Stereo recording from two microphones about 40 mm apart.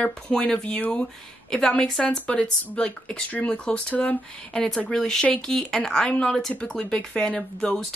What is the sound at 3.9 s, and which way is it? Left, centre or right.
Speech, left.